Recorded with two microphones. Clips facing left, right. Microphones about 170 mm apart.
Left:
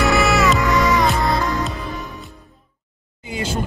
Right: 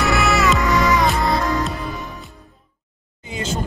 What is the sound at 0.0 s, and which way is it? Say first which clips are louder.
Music: left 2 dB; centre (ahead or behind).